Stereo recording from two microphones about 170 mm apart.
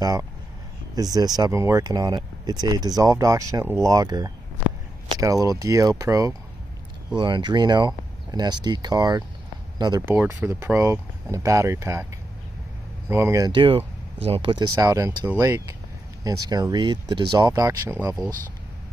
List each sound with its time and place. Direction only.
0.0 s speech: 20° right (ahead or behind)
10.0 s speech: 10° right (ahead or behind)
13.1 s speech: 15° right (ahead or behind)
13.5 s speech: 30° right (ahead or behind)